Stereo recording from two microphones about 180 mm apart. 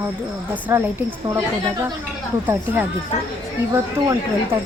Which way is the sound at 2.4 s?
10° right (ahead or behind).